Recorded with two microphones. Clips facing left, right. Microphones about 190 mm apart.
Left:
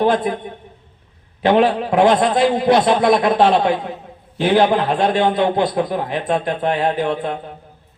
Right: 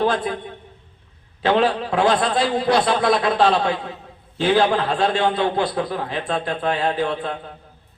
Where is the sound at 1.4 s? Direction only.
20° left (ahead or behind).